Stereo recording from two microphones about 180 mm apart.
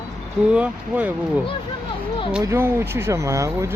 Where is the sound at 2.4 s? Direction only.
15° right (ahead or behind).